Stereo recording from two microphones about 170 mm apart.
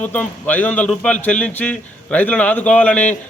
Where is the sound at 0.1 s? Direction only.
10° left (ahead or behind).